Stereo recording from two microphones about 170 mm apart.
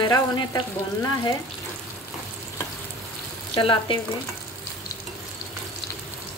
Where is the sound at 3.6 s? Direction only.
30° left (ahead or behind).